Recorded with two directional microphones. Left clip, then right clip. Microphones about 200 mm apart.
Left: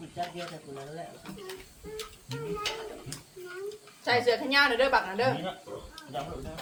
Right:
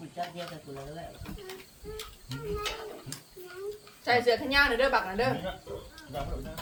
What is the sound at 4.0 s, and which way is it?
A woman's voice, 15° left (ahead or behind).